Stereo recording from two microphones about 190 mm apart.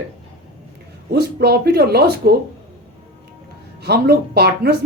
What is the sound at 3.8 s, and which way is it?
Speech, 55° right (ahead or behind).